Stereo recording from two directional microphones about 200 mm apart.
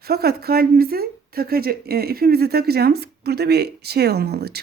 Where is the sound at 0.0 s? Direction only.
50° right (ahead or behind).